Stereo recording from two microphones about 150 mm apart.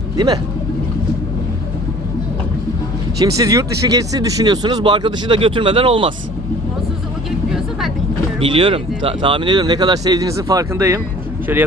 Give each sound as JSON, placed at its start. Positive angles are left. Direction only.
{"t": 3.2, "sound": "speech", "side_deg": -25}
{"t": 8.4, "sound": "speech", "side_deg": -35}